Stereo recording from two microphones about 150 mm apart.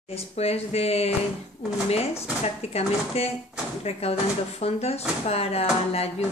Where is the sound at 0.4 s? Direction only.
45° left (ahead or behind).